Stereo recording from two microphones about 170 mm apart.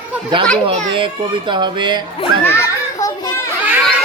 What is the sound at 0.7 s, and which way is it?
A child's voice, 35° right (ahead or behind).